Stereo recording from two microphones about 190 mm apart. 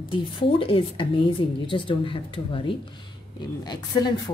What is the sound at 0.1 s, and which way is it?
A woman's voice, 25° left (ahead or behind).